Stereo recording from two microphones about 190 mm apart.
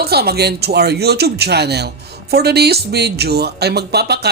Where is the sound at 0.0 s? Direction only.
55° right (ahead or behind).